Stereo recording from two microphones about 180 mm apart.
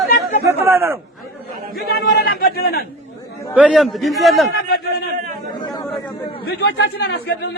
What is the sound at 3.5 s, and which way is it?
Speech, 5° right (ahead or behind).